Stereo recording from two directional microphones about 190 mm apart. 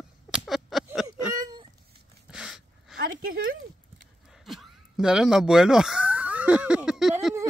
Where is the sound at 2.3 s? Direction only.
5° right (ahead or behind).